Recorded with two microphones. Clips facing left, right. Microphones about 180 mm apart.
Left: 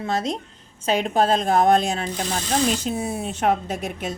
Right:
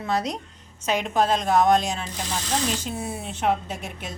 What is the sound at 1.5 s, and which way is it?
Speech, 55° left (ahead or behind).